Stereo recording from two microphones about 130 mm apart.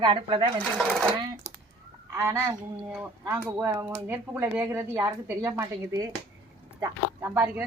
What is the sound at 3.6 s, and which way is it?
Speech, 20° right (ahead or behind).